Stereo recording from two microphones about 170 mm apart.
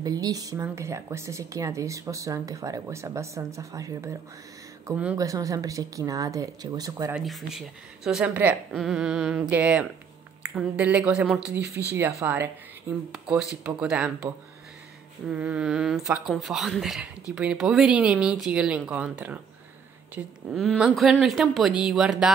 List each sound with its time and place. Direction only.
0.0 s a woman's voice: 20° right (ahead or behind)
7.2 s speech: centre (ahead or behind)
11.9 s speech: 15° right (ahead or behind)
13.1 s speech: centre (ahead or behind)
20.5 s speech: centre (ahead or behind)